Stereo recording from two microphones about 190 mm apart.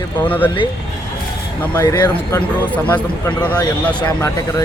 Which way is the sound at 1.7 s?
20° left (ahead or behind).